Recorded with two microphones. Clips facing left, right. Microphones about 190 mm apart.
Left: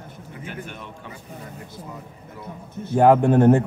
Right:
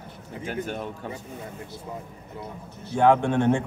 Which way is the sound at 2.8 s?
45° left (ahead or behind).